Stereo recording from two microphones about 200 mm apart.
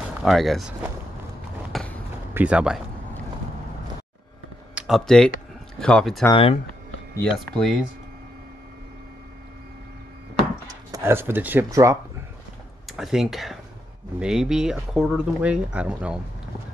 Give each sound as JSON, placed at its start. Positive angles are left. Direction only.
{"t": 0.2, "sound": "speech", "side_deg": 0}
{"t": 1.7, "sound": "run", "side_deg": 5}
{"t": 2.3, "sound": "speech", "side_deg": -5}
{"t": 4.7, "sound": "speech", "side_deg": 0}
{"t": 6.3, "sound": "speech", "side_deg": 30}
{"t": 7.5, "sound": "speech", "side_deg": 0}
{"t": 10.9, "sound": "speech", "side_deg": -10}
{"t": 12.8, "sound": "speech", "side_deg": 0}